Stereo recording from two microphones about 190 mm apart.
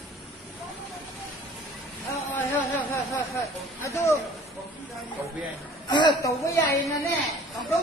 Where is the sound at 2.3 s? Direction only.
10° left (ahead or behind).